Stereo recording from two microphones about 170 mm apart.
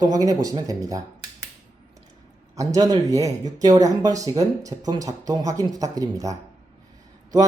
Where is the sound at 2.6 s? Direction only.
20° right (ahead or behind).